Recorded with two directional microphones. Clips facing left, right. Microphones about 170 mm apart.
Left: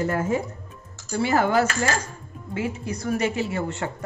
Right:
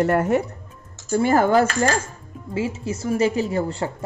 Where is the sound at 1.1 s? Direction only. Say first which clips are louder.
Right 4 dB; 50° right (ahead or behind).